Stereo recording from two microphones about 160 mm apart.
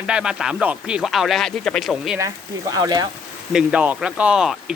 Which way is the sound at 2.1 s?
20° right (ahead or behind).